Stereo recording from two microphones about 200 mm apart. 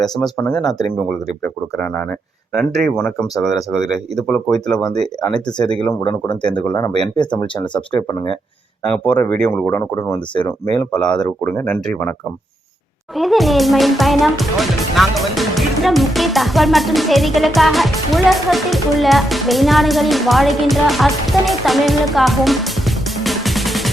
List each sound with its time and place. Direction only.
0.0 s speech: 5° left (ahead or behind)
2.6 s speech: centre (ahead or behind)
6.0 s speech: 25° left (ahead or behind)
8.8 s speech: 5° left (ahead or behind)
10.8 s speech: 5° left (ahead or behind)
13.1 s speech: centre (ahead or behind)
23.2 s music: centre (ahead or behind)